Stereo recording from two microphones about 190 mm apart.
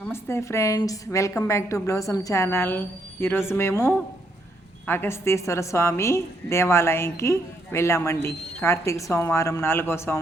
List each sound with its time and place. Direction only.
0.0 s a woman's voice: 15° left (ahead or behind)